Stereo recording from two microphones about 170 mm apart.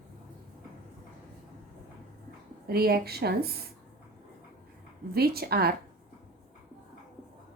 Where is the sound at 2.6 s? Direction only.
65° right (ahead or behind).